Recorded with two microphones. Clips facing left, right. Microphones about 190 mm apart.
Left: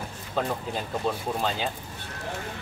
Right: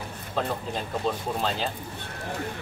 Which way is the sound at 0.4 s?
Centre (ahead or behind).